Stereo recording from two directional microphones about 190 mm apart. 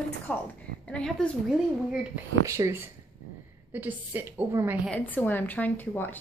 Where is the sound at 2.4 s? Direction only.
15° right (ahead or behind).